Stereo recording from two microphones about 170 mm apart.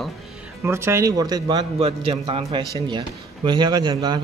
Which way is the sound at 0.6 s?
15° right (ahead or behind).